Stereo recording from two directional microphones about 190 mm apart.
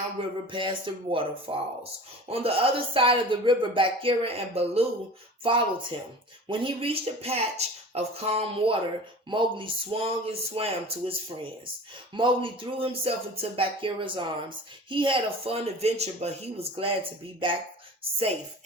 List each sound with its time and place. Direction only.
0.2 s speech: 35° right (ahead or behind)
12.1 s speech: 25° right (ahead or behind)